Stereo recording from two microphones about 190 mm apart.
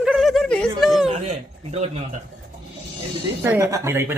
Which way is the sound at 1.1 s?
35° right (ahead or behind).